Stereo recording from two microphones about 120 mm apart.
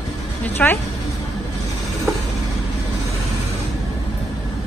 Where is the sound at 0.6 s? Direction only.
10° left (ahead or behind).